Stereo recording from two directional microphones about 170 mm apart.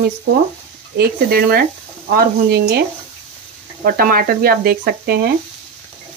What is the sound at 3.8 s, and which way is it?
Speech, 60° right (ahead or behind).